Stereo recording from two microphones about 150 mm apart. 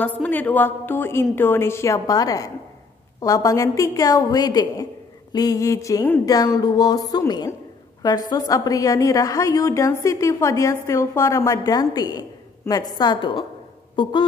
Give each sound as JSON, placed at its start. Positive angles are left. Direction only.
{"t": 0.0, "sound": "a woman's voice", "side_deg": 10}